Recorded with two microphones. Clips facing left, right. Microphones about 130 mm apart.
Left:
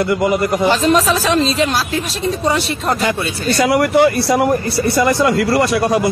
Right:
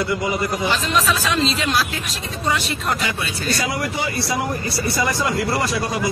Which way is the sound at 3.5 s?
65° left (ahead or behind).